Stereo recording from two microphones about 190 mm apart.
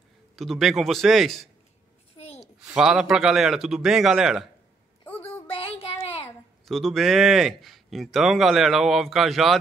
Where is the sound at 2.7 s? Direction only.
5° right (ahead or behind).